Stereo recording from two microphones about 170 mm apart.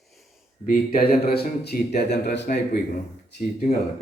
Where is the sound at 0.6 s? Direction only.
55° left (ahead or behind); by 2.6 s 75° left (ahead or behind).